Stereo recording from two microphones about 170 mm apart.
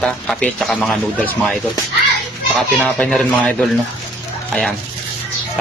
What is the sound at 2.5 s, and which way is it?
Speech, 5° left (ahead or behind).